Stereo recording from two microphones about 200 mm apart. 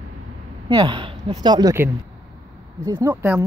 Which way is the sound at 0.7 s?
25° right (ahead or behind).